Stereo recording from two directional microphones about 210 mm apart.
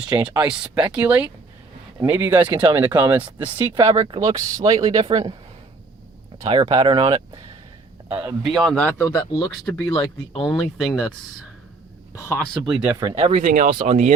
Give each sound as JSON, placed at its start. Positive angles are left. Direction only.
{"t": 0.2, "sound": "speech", "side_deg": -5}
{"t": 2.3, "sound": "speech", "side_deg": -25}
{"t": 3.0, "sound": "speech", "side_deg": -10}
{"t": 3.4, "sound": "speech", "side_deg": -25}
{"t": 6.5, "sound": "speech", "side_deg": -25}
{"t": 8.0, "sound": "speech", "side_deg": -10}
{"t": 8.4, "sound": "speech", "side_deg": 0}
{"t": 10.5, "sound": "speech", "side_deg": 0}
{"t": 12.1, "sound": "speech", "side_deg": 15}
{"t": 12.6, "sound": "speech", "side_deg": -5}
{"t": 13.0, "sound": "speech", "side_deg": -25}